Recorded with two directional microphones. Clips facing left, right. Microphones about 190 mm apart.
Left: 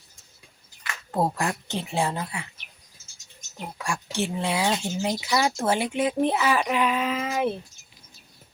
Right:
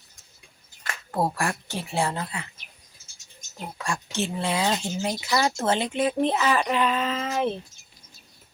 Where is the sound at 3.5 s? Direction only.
10° left (ahead or behind).